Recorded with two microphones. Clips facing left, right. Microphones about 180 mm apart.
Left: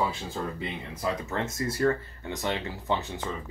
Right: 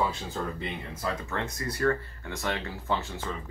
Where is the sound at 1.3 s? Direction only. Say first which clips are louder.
Left 3 dB; 25° left (ahead or behind).